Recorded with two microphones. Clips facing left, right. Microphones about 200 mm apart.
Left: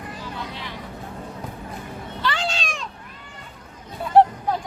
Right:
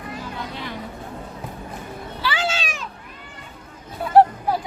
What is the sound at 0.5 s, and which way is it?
Vehicle, 50° right (ahead or behind).